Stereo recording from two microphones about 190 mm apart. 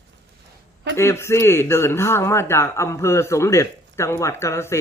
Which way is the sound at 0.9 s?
15° left (ahead or behind).